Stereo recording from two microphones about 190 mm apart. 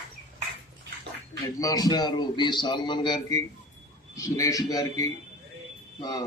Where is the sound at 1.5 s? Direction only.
20° left (ahead or behind).